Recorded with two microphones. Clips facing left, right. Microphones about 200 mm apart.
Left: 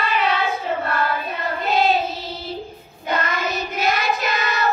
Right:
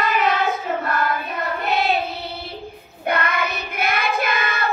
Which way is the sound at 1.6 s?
65° right (ahead or behind).